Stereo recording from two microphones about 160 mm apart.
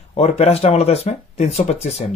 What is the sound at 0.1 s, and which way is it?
Speech, 40° left (ahead or behind).